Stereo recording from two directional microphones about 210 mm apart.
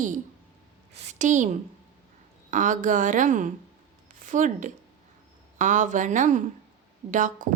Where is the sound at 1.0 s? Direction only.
35° right (ahead or behind).